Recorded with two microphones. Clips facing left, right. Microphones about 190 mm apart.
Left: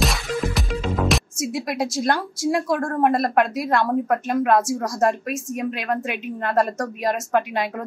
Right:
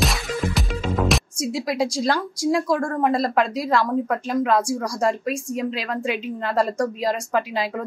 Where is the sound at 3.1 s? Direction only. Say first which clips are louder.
Left 2 dB; 55° left (ahead or behind).